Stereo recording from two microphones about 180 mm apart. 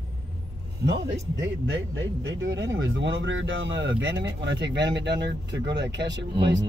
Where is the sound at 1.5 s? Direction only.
90° right.